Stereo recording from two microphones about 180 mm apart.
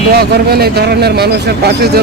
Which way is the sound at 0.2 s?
60° right (ahead or behind).